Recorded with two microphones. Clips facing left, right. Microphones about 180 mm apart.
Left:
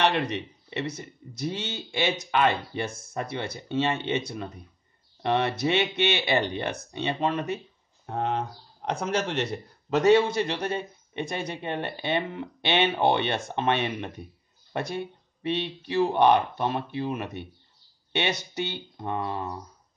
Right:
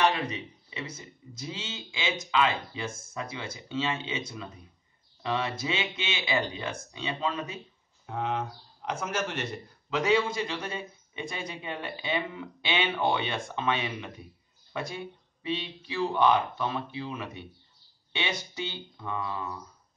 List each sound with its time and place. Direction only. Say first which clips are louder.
0.0 s speech: left 2 dB; 65° left (ahead or behind)
14.7 s speech: left 4 dB; 70° left (ahead or behind)
16.2 s speech: left 2 dB; 60° left (ahead or behind)
18.1 s speech: left 5 dB; 70° left (ahead or behind)
19.0 s a sound: left 4 dB; 55° left (ahead or behind)